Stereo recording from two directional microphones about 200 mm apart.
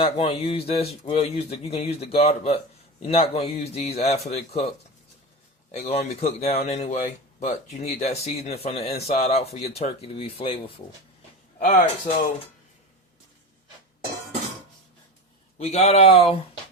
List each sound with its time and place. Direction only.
0.0 s speech: 30° left (ahead or behind)
5.9 s speech: 30° left (ahead or behind)
11.6 s speech: 40° left (ahead or behind)
15.5 s speech: 30° left (ahead or behind)